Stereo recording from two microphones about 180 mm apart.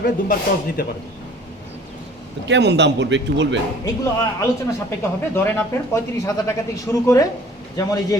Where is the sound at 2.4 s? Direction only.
75° right (ahead or behind).